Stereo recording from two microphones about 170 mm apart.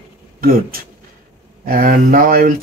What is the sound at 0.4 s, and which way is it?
Speech, 60° right (ahead or behind).